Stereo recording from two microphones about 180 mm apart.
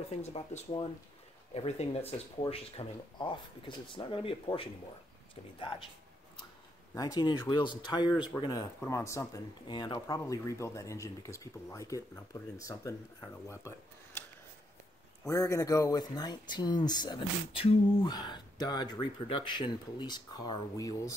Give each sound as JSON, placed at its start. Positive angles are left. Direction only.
{"t": 0.2, "sound": "speech", "side_deg": 40}
{"t": 6.9, "sound": "speech", "side_deg": 20}
{"t": 8.1, "sound": "speech", "side_deg": -5}
{"t": 8.4, "sound": "speech", "side_deg": 20}
{"t": 15.2, "sound": "speech", "side_deg": 15}